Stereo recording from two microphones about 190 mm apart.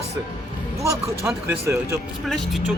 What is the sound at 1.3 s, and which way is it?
Speech, 10° right (ahead or behind).